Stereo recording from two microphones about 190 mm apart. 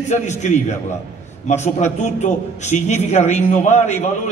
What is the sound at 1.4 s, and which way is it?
A man's voice, 35° left (ahead or behind).